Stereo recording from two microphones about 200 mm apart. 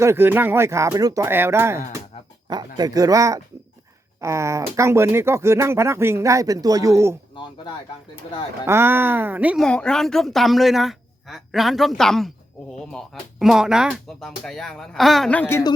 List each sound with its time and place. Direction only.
0.0 s speech: 10° right (ahead or behind)
2.1 s music: 30° left (ahead or behind)
2.5 s speech: 20° right (ahead or behind)
8.6 s speech: 10° right (ahead or behind)
9.6 s speech: 5° left (ahead or behind)